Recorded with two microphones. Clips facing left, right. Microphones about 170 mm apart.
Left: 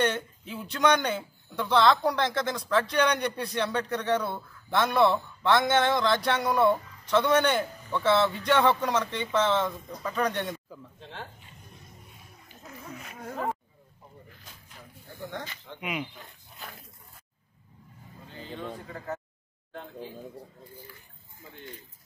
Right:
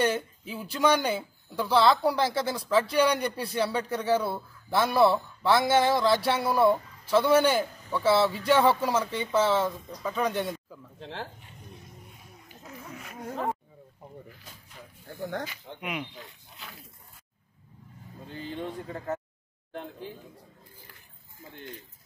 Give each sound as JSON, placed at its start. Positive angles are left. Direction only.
{"t": 0.0, "sound": "speech", "side_deg": -5}
{"t": 15.8, "sound": "speech", "side_deg": 0}
{"t": 18.6, "sound": "speech", "side_deg": -25}